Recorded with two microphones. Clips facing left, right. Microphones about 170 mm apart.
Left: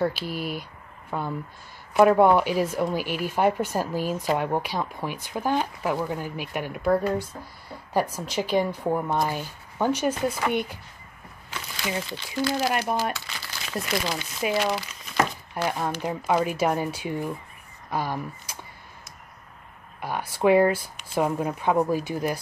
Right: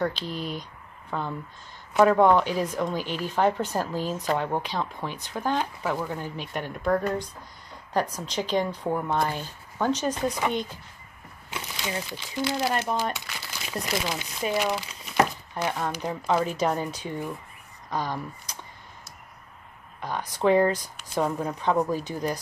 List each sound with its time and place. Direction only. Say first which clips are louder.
0.0 s speech: left 2 dB; 5° left (ahead or behind)
11.5 s a sound: left 2 dB; 20° right (ahead or behind)
12.5 s speech: even; 10° left (ahead or behind)
20.0 s speech: left 2 dB; 10° left (ahead or behind)